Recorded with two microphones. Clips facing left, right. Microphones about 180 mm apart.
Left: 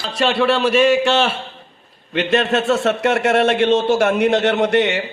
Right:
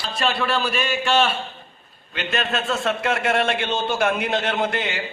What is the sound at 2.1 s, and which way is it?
A man's voice, 80° left.